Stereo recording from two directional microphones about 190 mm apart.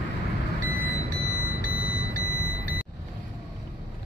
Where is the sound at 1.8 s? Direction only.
50° left (ahead or behind).